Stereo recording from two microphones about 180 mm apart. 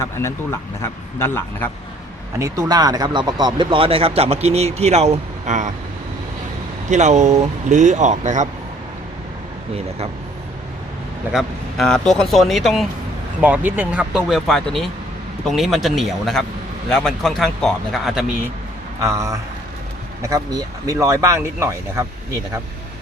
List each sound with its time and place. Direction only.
0.0 s speech: 15° left (ahead or behind)
2.4 s speech: 20° right (ahead or behind); by 5.7 s 40° right (ahead or behind)
6.9 s speech: 40° right (ahead or behind)
11.3 s speech: centre (ahead or behind)
19.0 s speech: 15° right (ahead or behind)